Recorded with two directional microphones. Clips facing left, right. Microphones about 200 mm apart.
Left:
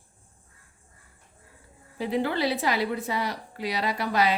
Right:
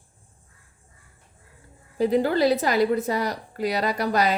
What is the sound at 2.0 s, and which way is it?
A woman's voice, 40° right (ahead or behind).